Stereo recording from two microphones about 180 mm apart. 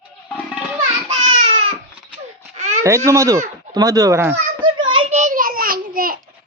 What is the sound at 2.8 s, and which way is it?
A child's voice, 15° right (ahead or behind).